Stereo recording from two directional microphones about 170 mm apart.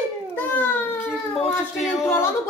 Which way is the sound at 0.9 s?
Centre (ahead or behind).